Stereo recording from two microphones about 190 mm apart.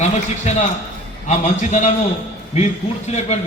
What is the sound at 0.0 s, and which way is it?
A man's voice, 35° left (ahead or behind).